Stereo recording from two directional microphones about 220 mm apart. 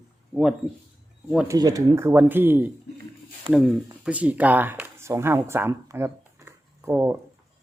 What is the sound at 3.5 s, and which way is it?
Speech, 25° right (ahead or behind).